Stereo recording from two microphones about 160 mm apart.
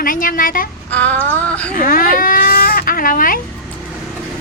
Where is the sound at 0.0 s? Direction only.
60° left (ahead or behind).